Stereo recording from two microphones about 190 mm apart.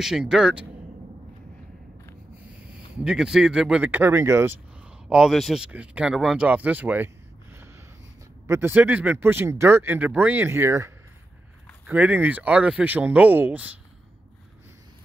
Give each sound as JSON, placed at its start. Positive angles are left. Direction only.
{"t": 0.0, "sound": "speech", "side_deg": 0}
{"t": 3.0, "sound": "speech", "side_deg": -5}
{"t": 5.1, "sound": "speech", "side_deg": 0}
{"t": 8.5, "sound": "speech", "side_deg": -10}
{"t": 11.9, "sound": "speech", "side_deg": -10}